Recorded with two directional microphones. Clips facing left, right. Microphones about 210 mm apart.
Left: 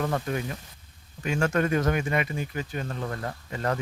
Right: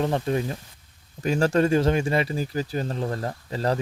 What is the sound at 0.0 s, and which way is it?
Speech, 30° right (ahead or behind).